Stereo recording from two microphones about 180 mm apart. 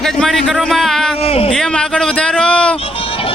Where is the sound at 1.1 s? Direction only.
35° left (ahead or behind).